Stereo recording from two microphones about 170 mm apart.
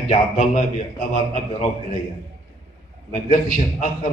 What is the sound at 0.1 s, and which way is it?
Speech, 40° left (ahead or behind).